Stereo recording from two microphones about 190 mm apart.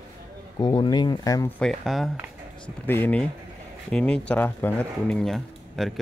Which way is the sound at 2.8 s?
10° left (ahead or behind).